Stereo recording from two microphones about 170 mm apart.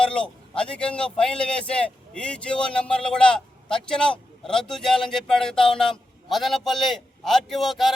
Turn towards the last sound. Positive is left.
turn(degrees=0)  # may be behind; listen again after turning